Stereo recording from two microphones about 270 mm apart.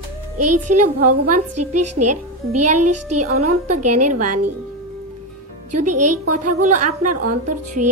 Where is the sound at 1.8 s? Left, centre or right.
Right.